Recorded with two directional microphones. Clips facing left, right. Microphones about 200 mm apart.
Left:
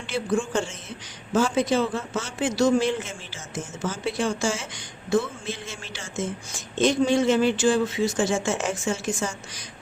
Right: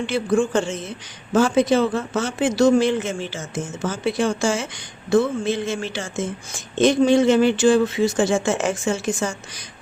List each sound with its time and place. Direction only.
0.0 s a man's voice: 65° right (ahead or behind)